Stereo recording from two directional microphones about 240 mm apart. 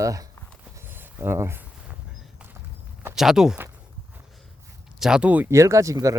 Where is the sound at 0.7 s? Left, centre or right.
Centre.